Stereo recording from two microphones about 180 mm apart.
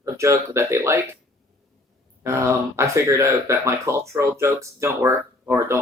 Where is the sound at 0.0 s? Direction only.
15° right (ahead or behind).